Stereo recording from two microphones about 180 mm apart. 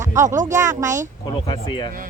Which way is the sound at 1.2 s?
25° left (ahead or behind).